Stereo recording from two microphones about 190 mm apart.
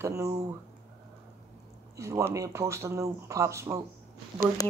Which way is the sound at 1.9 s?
15° right (ahead or behind).